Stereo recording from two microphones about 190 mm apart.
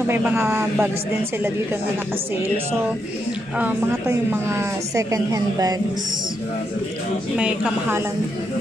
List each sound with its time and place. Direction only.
0.1 s a woman's voice: 10° right (ahead or behind)
3.5 s a woman's voice: 10° right (ahead or behind)
7.3 s a woman's voice: 5° right (ahead or behind)